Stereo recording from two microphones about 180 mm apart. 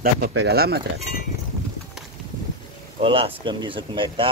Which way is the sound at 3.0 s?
30° right (ahead or behind).